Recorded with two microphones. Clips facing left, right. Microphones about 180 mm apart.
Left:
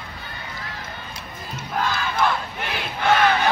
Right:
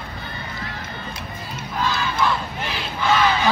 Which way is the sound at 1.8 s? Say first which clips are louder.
Even; 55° left (ahead or behind).